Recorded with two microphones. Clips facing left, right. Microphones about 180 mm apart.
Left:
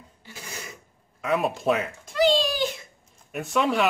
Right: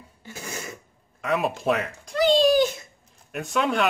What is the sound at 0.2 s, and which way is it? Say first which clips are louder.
Throat clearing: right 5 dB; 45° right (ahead or behind).